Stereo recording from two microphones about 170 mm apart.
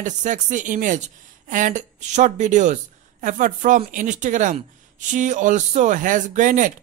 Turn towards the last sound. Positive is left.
turn(degrees=-50)  # may be behind; listen again after turning